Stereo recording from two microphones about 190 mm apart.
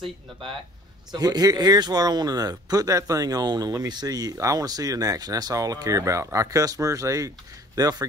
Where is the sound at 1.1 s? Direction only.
20° right (ahead or behind).